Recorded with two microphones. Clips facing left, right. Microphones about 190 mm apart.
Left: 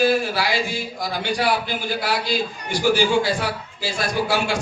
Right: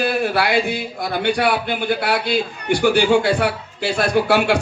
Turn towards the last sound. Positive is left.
turn(degrees=-60)  # may be behind; listen again after turning